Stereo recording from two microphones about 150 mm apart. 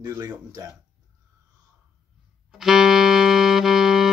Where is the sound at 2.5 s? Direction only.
5° right (ahead or behind).